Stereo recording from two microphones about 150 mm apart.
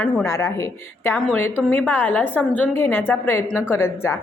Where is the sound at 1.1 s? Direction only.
5° left (ahead or behind).